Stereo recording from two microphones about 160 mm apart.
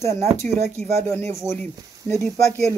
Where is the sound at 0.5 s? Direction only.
40° right (ahead or behind).